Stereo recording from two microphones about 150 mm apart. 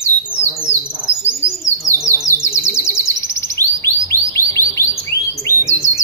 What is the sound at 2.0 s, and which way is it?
Bird, 20° left (ahead or behind).